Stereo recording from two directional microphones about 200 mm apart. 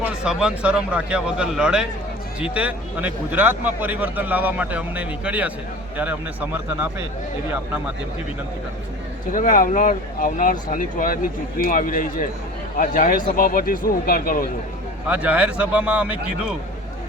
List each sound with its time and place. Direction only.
0.0 s a man's voice: 5° right (ahead or behind)
9.3 s speech: 40° left (ahead or behind)
15.0 s a man's voice: 5° right (ahead or behind)